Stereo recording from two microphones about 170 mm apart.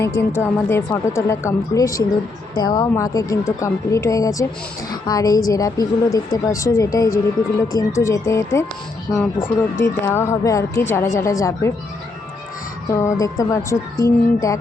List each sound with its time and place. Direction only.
0.0 s a woman's voice: 15° left (ahead or behind)
12.9 s a woman's voice: 15° left (ahead or behind)